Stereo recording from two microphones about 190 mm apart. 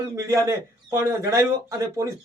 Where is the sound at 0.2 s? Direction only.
15° right (ahead or behind).